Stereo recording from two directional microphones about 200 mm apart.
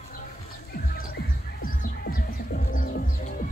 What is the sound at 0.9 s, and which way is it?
Music, 45° left (ahead or behind).